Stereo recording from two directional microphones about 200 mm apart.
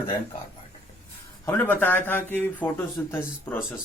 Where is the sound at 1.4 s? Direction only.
10° left (ahead or behind).